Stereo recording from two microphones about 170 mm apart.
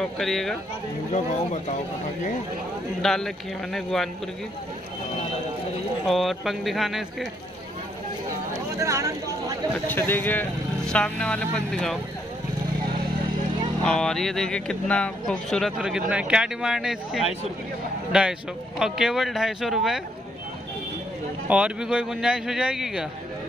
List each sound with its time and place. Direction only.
0.0 s speech: centre (ahead or behind)
3.0 s speech: centre (ahead or behind)
6.0 s speech: centre (ahead or behind)
8.5 s a sound: 20° right (ahead or behind)
9.8 s speech: 10° left (ahead or behind)
13.8 s speech: 5° left (ahead or behind)
18.8 s speech: 5° right (ahead or behind)
21.5 s speech: 5° right (ahead or behind)